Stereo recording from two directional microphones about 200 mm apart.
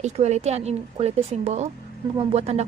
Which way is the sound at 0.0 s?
35° right (ahead or behind).